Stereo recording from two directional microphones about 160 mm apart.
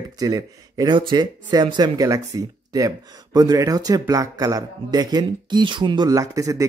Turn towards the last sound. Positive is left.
turn(degrees=-20)  # may be behind; listen again after turning